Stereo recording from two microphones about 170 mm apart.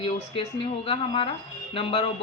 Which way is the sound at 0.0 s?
30° left (ahead or behind).